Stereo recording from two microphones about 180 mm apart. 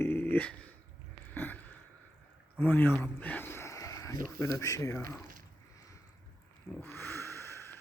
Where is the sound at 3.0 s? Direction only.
10° left (ahead or behind).